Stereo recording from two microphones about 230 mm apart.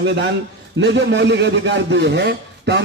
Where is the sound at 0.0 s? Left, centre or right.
Right.